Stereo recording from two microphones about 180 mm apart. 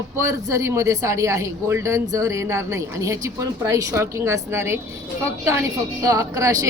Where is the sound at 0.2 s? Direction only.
15° right (ahead or behind).